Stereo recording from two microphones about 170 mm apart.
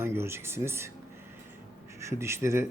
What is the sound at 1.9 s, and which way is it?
Speech, 15° right (ahead or behind).